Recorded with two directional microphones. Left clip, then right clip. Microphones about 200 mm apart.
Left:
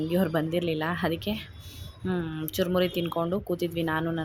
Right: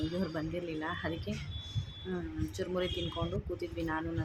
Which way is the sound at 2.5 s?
35° left (ahead or behind).